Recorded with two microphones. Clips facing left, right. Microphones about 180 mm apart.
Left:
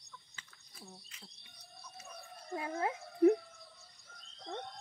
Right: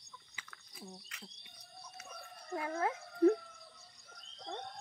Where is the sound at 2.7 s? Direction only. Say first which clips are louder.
Left 1 dB; 15° left (ahead or behind).